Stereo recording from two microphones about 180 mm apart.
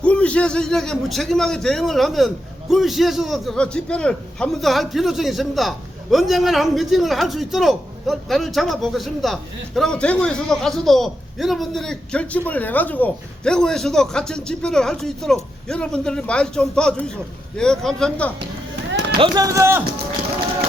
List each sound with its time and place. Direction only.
0.0 s a man's voice: 5° left (ahead or behind)
19.2 s speech: 20° right (ahead or behind)